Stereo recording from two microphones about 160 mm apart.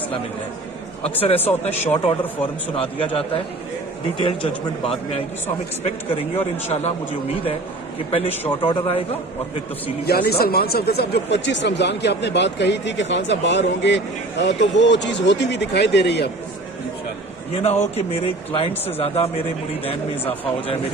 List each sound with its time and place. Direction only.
1.2 s a man's voice: 40° left (ahead or behind)
5.8 s a man's voice: 40° left (ahead or behind)
8.1 s a man's voice: 40° left (ahead or behind)
10.1 s speech: 75° left (ahead or behind)
17.5 s a man's voice: 40° left (ahead or behind)